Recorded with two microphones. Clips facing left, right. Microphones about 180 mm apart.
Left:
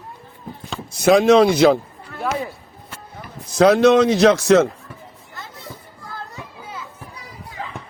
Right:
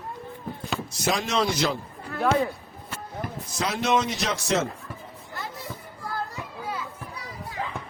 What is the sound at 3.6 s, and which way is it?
A man's voice, 70° left (ahead or behind).